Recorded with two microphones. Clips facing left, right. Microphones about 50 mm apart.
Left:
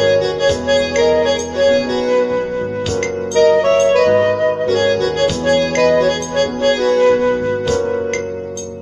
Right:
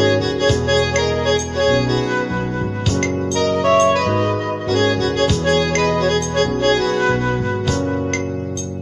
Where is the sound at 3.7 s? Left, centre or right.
Centre.